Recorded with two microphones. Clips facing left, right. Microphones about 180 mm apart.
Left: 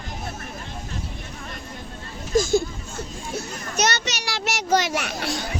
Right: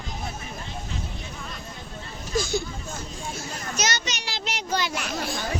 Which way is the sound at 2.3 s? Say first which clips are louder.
Left 7 dB; 45° left (ahead or behind).